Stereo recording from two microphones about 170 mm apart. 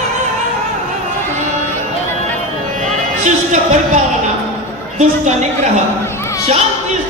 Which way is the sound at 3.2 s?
45° right (ahead or behind).